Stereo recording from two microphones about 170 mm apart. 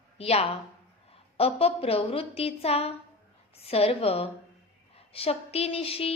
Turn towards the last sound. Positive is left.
turn(degrees=35)  # may be behind; listen again after turning